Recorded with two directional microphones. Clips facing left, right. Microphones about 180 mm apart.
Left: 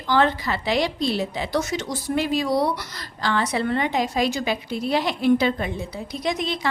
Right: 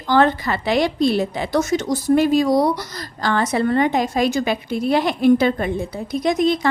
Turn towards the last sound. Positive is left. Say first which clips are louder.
# right 8 dB
turn(degrees=-45)  # may be behind; listen again after turning